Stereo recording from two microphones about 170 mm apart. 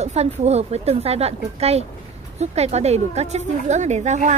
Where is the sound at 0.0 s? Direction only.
40° right (ahead or behind).